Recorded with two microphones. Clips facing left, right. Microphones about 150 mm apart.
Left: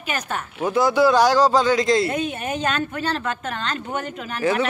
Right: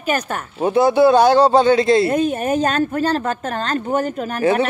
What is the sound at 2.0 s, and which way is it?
A woman's voice, 45° right (ahead or behind).